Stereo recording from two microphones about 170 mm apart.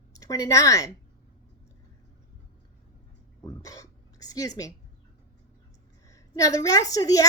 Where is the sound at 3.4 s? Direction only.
20° left (ahead or behind).